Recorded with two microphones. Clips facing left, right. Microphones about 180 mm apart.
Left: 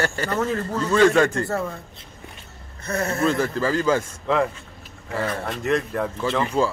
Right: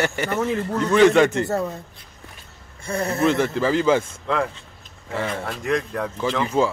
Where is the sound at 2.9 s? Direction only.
15° right (ahead or behind).